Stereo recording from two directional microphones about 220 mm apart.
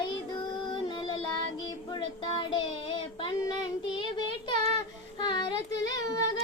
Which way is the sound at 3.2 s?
20° left (ahead or behind).